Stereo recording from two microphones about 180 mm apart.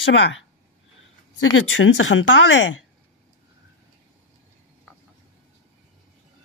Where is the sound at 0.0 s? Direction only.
85° left.